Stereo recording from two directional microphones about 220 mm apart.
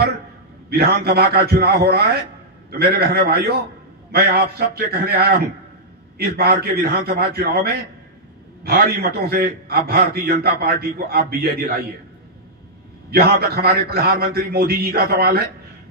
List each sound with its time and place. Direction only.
0.7 s a man's voice: 45° right (ahead or behind)
13.1 s a man's voice: 45° right (ahead or behind)